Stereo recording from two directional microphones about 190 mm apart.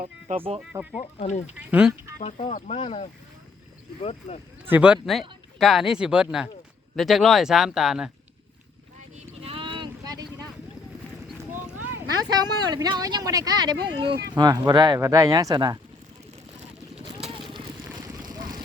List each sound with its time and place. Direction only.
0.3 s speech: 30° right (ahead or behind)
0.6 s speech: 5° right (ahead or behind)
0.9 s speech: 35° left (ahead or behind)
1.5 s speech: 10° right (ahead or behind)
2.5 s speech: 40° left (ahead or behind)
4.7 s speech: 5° right (ahead or behind)
9.0 s boat: 35° right (ahead or behind)
11.8 s speech: 20° right (ahead or behind)
16.9 s a sound: 35° right (ahead or behind)
18.3 s vehicle: 20° right (ahead or behind)